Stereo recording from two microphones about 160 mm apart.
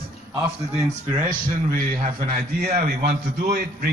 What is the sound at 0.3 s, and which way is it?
Speech, 15° right (ahead or behind).